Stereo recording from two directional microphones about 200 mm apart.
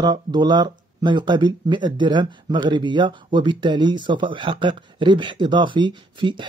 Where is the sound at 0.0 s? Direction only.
20° right (ahead or behind).